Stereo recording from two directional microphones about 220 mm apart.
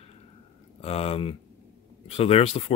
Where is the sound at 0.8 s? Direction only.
30° left (ahead or behind).